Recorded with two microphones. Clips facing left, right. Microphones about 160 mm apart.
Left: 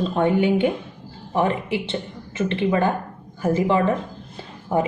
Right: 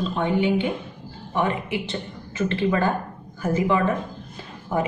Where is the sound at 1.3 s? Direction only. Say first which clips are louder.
Left 3 dB; 30° left (ahead or behind).